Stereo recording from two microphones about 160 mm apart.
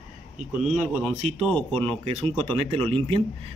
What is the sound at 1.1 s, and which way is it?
Speech, 40° right (ahead or behind).